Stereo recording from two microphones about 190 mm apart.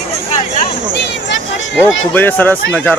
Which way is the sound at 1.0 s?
70° left (ahead or behind).